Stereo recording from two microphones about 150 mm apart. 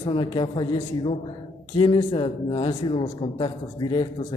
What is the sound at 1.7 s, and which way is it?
A man's voice, 35° left (ahead or behind).